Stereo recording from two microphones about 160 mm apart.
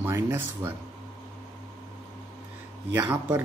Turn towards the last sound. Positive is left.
turn(degrees=-15)  # may be behind; listen again after turning